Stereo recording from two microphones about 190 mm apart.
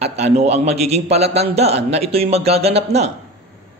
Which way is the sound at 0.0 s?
35° right (ahead or behind).